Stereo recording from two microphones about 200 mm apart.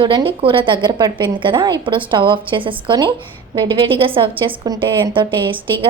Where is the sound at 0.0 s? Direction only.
25° right (ahead or behind).